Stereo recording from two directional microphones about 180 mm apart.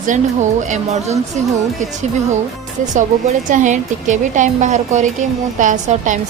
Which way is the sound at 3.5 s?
45° right (ahead or behind).